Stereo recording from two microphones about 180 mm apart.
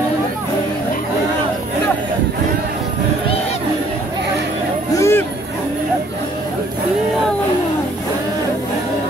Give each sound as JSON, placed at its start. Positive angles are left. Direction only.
{"t": 4.9, "sound": "hubbub", "side_deg": 15}